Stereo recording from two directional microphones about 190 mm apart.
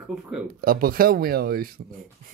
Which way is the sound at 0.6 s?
50° right (ahead or behind).